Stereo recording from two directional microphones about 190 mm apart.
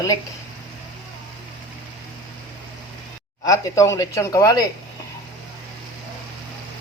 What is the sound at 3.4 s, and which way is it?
Speech, 15° left (ahead or behind).